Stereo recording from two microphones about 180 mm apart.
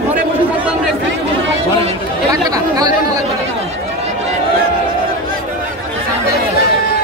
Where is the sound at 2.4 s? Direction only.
20° right (ahead or behind).